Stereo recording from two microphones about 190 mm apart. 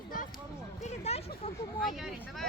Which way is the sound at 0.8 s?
35° left (ahead or behind).